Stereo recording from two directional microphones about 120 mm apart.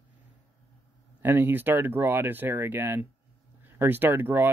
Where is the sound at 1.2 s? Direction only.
20° right (ahead or behind).